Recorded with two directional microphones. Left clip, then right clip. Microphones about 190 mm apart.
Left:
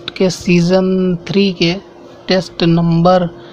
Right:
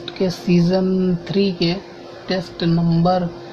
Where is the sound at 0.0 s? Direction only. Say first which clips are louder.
Left 6 dB; 25° left (ahead or behind).